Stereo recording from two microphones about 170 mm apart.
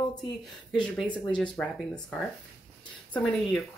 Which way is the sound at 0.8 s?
5° left (ahead or behind).